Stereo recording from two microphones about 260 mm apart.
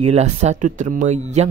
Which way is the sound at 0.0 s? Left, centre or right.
Right.